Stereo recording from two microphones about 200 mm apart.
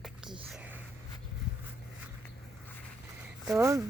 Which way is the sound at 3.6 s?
15° right (ahead or behind).